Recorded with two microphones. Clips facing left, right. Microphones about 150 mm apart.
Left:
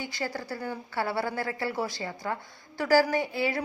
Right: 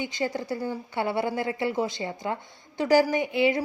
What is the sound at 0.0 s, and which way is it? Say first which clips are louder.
Speech: right 5 dB; 20° right (ahead or behind).